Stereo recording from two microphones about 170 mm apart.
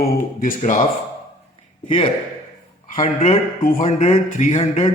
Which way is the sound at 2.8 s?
45° left (ahead or behind).